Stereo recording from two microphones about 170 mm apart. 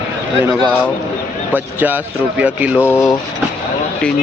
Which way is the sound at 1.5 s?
10° right (ahead or behind).